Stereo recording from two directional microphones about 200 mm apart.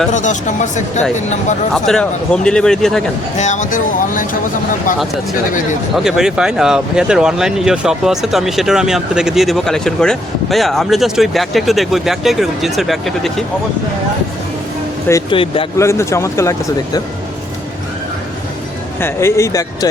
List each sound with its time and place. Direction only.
0.1 s speech: 40° left (ahead or behind)
1.7 s speech: 5° left (ahead or behind)
3.3 s speech: 35° left (ahead or behind)
6.0 s speech: centre (ahead or behind)
15.3 s speech: 25° left (ahead or behind)
15.8 s speech: 15° left (ahead or behind)
18.9 s speech: 10° left (ahead or behind)